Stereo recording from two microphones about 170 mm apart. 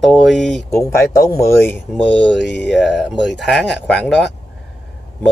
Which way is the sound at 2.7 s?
Centre (ahead or behind).